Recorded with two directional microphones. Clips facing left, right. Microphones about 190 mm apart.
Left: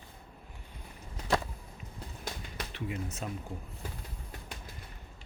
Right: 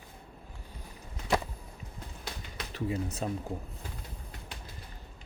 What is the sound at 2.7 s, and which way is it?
Speech, 35° right (ahead or behind).